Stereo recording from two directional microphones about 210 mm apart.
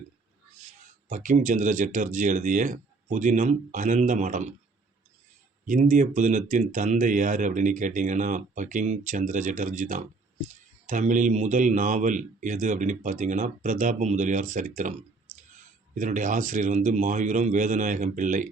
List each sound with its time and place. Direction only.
1.0 s speech: 40° right (ahead or behind)
5.6 s speech: 40° right (ahead or behind)
16.0 s speech: 40° right (ahead or behind)